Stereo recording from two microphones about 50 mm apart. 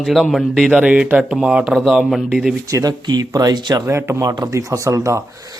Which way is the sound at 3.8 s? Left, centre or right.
Right.